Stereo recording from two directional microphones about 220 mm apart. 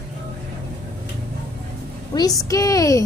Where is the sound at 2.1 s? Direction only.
15° left (ahead or behind).